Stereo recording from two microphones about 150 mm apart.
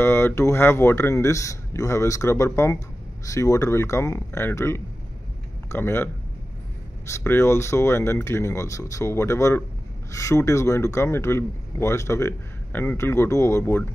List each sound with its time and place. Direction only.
0.0 s a man's voice: 15° left (ahead or behind)
7.1 s a man's voice: 15° left (ahead or behind)